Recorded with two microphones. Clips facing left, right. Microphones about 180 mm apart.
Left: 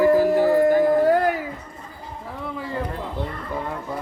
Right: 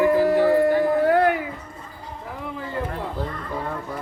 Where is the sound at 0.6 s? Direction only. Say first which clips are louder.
Left 2 dB; 45° left (ahead or behind).